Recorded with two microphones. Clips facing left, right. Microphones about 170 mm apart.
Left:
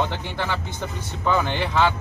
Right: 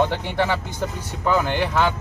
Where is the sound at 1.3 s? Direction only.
10° right (ahead or behind).